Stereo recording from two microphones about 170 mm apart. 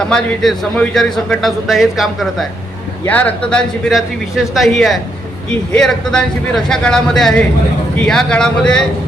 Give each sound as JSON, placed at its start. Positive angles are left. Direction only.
{"t": 0.1, "sound": "a man's voice", "side_deg": 5}